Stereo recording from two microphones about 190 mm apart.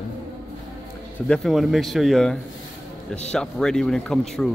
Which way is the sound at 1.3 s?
Centre (ahead or behind).